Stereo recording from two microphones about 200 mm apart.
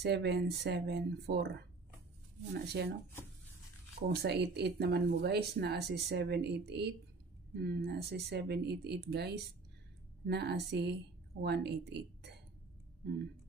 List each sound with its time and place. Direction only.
0.0 s speech: 55° right (ahead or behind)
4.1 s speech: 55° right (ahead or behind)